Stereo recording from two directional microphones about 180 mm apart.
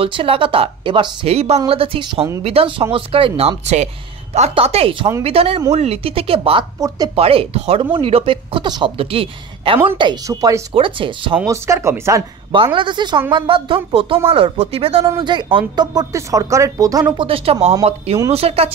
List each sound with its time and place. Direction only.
0.0 s speech: 30° right (ahead or behind)
11.3 s speech: 15° right (ahead or behind)
12.5 s speech: 30° right (ahead or behind)